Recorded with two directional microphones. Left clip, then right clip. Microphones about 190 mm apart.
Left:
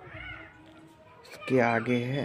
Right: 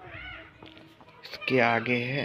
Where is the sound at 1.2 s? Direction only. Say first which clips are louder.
Right 1 dB; 15° left (ahead or behind).